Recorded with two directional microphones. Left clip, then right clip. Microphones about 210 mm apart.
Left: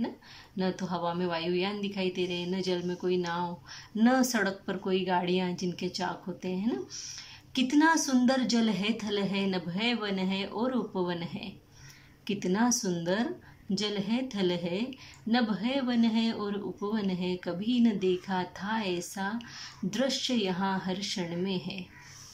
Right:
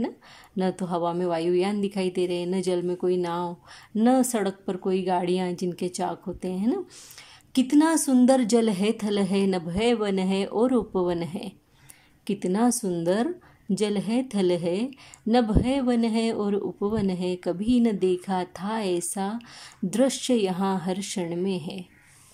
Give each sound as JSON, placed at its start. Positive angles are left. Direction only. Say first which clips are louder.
{"t": 0.6, "sound": "speech", "louder": "right 6 dB", "side_deg": -30}